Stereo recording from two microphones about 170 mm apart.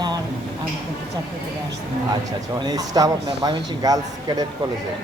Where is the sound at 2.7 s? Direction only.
20° right (ahead or behind).